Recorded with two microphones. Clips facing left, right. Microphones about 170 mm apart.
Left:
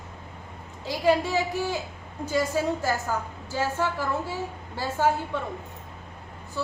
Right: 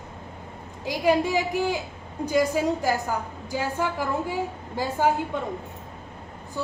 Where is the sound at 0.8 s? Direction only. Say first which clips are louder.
Right 1 dB; 15° right (ahead or behind).